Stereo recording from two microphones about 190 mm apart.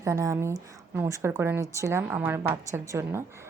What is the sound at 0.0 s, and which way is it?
Speech, 15° right (ahead or behind).